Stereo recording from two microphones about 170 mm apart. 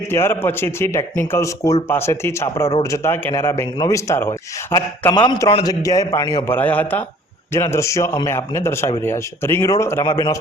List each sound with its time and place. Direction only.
0.1 s a man's voice: 15° left (ahead or behind)
6.5 s a man's voice: 10° left (ahead or behind)